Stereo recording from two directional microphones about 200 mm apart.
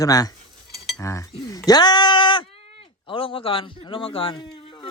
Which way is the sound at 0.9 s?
15° left (ahead or behind).